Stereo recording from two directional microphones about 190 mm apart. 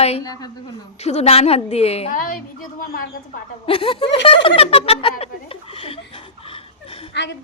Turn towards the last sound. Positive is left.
turn(degrees=65)  # may be behind; listen again after turning